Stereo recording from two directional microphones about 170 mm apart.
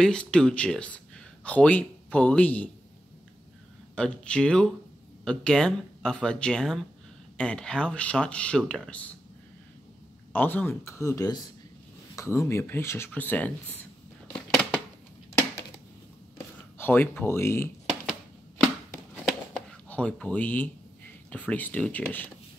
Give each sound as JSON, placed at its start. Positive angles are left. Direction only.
{"t": 0.0, "sound": "speech", "side_deg": 5}
{"t": 3.9, "sound": "speech", "side_deg": 5}
{"t": 10.3, "sound": "speech", "side_deg": 10}
{"t": 14.2, "sound": "a sound", "side_deg": 5}
{"t": 16.7, "sound": "speech", "side_deg": 10}
{"t": 19.2, "sound": "a sound", "side_deg": 5}
{"t": 21.3, "sound": "speech", "side_deg": 10}